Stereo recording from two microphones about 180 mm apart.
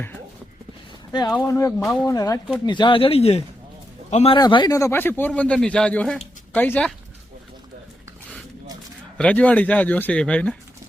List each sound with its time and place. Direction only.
1.3 s speech: 15° left (ahead or behind); by 4.4 s 35° left (ahead or behind)
4.4 s speech: 25° left (ahead or behind); by 6.9 s 10° left (ahead or behind)
9.1 s speech: 5° left (ahead or behind)